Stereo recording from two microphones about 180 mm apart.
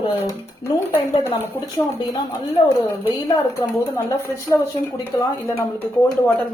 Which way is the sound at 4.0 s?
15° left (ahead or behind).